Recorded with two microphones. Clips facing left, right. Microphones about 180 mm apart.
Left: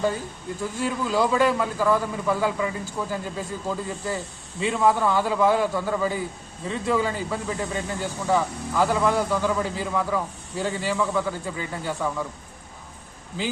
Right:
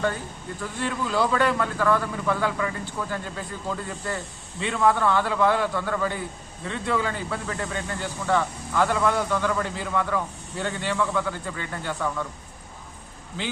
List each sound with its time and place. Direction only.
0.6 s a man's voice: 5° left (ahead or behind)